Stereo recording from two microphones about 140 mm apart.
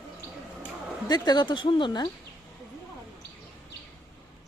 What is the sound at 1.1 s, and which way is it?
Speech, 30° left (ahead or behind).